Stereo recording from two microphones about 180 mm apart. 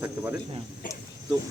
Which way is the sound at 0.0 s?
10° right (ahead or behind).